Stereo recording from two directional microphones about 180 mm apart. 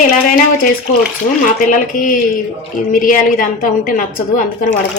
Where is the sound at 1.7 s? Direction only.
45° left (ahead or behind).